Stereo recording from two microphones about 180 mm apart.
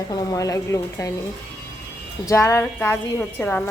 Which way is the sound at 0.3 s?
15° left (ahead or behind).